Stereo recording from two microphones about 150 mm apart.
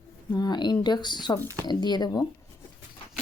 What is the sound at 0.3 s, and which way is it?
Speech, 25° left (ahead or behind).